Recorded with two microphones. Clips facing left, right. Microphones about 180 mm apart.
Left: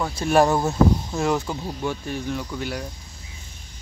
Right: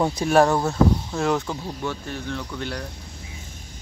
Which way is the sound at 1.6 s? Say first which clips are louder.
Left 2 dB; 15° left (ahead or behind).